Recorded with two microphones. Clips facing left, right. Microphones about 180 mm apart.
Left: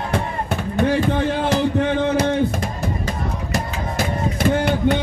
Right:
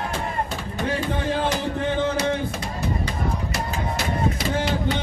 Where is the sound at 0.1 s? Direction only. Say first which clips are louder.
Left 4 dB; 60° left (ahead or behind).